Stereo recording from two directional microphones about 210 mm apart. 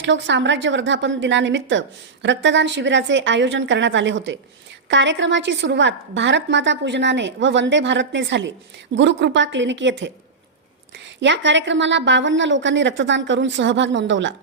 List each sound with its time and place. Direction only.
0.0 s a woman's voice: 60° right (ahead or behind)
11.2 s a woman's voice: 60° right (ahead or behind)